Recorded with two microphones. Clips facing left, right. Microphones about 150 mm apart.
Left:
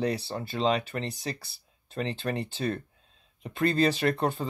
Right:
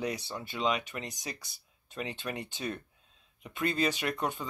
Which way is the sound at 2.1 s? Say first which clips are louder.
Left 7 dB; 35° left (ahead or behind).